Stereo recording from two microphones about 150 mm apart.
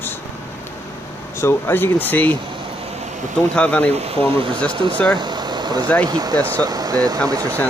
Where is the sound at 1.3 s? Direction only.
15° left (ahead or behind).